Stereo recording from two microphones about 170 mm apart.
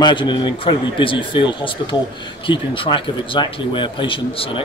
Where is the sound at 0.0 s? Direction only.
25° left (ahead or behind).